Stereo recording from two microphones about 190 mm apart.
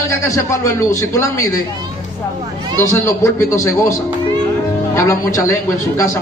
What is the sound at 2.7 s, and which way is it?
Speech, 15° left (ahead or behind).